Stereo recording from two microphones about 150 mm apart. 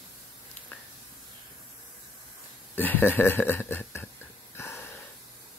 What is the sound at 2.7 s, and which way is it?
Speech, 10° left (ahead or behind).